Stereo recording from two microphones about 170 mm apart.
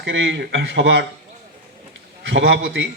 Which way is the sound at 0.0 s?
90° right.